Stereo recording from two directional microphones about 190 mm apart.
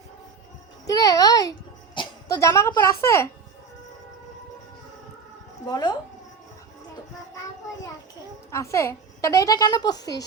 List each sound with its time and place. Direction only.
0.9 s a child's voice: 20° left (ahead or behind)
5.6 s speech: 20° left (ahead or behind)
8.4 s a woman's voice: 15° left (ahead or behind)